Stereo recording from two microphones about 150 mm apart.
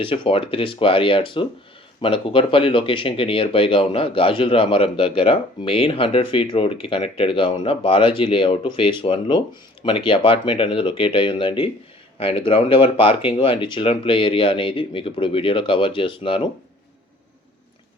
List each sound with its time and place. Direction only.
0.0 s speech: 35° left (ahead or behind)